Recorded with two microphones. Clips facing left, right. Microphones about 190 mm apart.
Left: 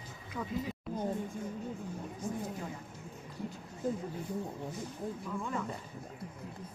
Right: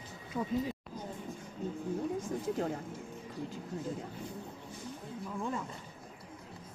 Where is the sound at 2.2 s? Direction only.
55° right (ahead or behind).